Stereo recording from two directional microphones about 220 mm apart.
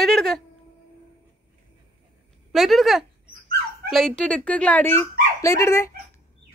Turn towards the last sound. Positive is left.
turn(degrees=15)  # may be behind; listen again after turning